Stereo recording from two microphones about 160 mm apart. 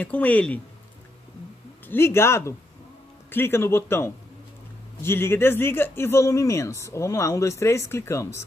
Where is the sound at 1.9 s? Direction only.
15° left (ahead or behind).